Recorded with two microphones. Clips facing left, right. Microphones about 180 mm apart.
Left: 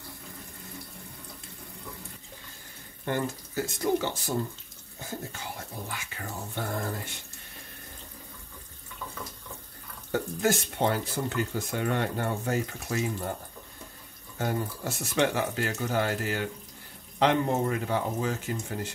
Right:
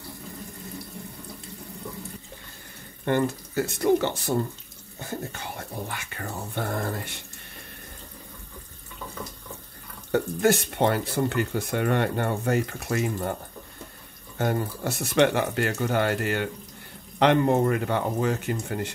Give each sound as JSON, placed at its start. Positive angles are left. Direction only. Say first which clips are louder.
{"t": 3.1, "sound": "speech", "louder": "right 6 dB", "side_deg": -65}
{"t": 10.1, "sound": "speech", "louder": "right 5 dB", "side_deg": -65}
{"t": 14.4, "sound": "speech", "louder": "right 4 dB", "side_deg": -65}